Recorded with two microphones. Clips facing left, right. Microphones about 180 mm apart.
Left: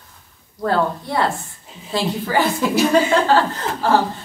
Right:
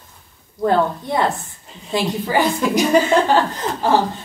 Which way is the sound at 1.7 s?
Centre (ahead or behind).